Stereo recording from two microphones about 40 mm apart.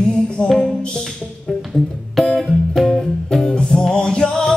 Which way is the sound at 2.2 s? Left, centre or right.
Centre.